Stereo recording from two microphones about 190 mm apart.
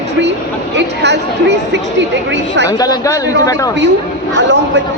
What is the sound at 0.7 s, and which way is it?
Speech, 65° right (ahead or behind).